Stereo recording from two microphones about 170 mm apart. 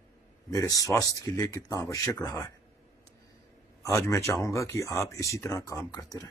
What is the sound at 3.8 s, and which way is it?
Speech, 15° left (ahead or behind).